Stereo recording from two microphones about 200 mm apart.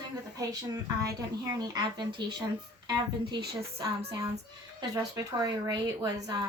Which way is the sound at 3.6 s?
30° right (ahead or behind).